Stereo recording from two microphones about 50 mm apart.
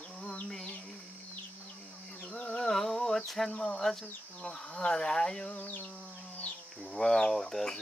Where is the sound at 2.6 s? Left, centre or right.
Centre.